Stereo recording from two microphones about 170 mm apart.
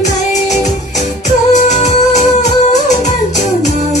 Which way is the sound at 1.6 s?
40° left (ahead or behind).